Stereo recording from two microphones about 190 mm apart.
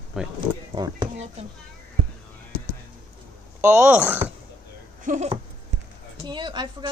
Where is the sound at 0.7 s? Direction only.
25° right (ahead or behind).